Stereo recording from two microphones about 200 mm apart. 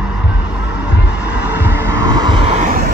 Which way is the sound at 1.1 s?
5° right (ahead or behind).